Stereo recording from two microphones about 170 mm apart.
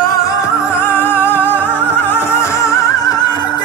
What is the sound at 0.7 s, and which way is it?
Music, 15° left (ahead or behind).